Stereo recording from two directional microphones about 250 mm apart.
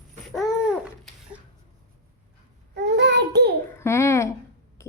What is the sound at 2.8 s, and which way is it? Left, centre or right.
Speech, right.